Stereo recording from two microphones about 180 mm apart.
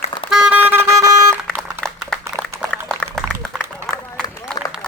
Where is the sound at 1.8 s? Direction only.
5° left (ahead or behind).